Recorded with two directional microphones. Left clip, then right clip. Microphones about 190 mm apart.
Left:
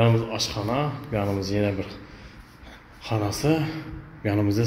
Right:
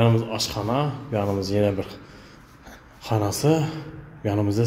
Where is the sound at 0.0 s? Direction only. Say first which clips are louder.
Right 1 dB; 20° right (ahead or behind).